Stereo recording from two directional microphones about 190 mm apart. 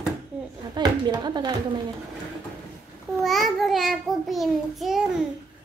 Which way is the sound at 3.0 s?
Centre (ahead or behind).